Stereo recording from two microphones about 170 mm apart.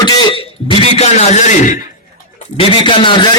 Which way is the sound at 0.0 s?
25° left (ahead or behind).